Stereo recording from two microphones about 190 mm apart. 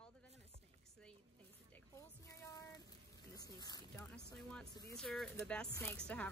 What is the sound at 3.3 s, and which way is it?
Speech, 20° left (ahead or behind).